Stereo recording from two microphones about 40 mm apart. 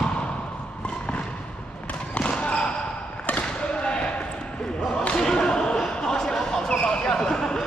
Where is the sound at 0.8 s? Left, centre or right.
Left.